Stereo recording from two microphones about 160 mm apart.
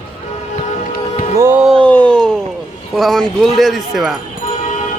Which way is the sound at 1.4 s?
15° right (ahead or behind).